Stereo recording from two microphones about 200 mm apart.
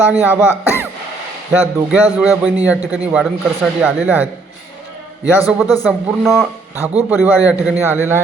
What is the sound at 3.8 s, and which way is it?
Speech, 10° right (ahead or behind).